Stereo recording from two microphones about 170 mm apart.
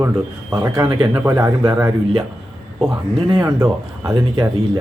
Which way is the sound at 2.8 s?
Centre (ahead or behind).